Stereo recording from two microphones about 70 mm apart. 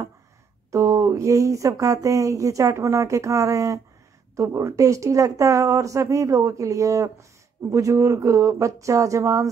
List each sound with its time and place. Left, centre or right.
0.7 s speech: right